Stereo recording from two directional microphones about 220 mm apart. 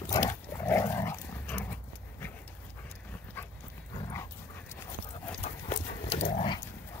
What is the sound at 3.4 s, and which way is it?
Dog, 10° left (ahead or behind).